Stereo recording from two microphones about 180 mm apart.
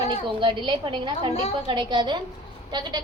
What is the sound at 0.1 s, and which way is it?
A woman's voice, 30° right (ahead or behind).